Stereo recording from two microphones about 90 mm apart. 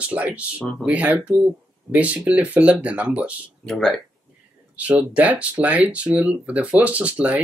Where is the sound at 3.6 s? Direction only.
5° left (ahead or behind).